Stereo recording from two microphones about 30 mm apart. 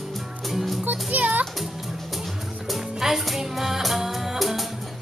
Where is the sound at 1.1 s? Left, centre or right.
Right.